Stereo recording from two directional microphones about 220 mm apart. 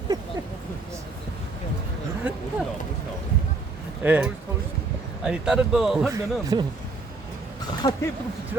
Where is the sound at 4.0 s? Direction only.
5° right (ahead or behind).